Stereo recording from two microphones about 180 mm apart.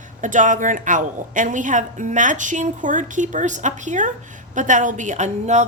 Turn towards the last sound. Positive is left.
turn(degrees=-40)  # may be behind; listen again after turning